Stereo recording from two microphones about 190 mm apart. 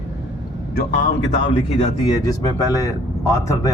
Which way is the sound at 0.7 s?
50° left (ahead or behind).